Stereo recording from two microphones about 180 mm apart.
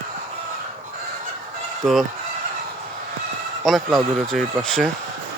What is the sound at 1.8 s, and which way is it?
Speech, centre (ahead or behind).